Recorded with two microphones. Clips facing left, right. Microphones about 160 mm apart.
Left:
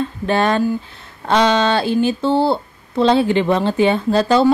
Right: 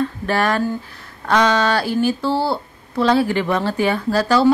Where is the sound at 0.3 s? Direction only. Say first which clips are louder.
Left 4 dB; 20° left (ahead or behind).